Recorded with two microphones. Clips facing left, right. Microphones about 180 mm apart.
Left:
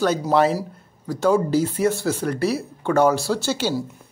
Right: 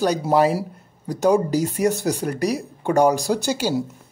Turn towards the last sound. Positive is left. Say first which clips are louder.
# right 1 dB
turn(degrees=-10)  # may be behind; listen again after turning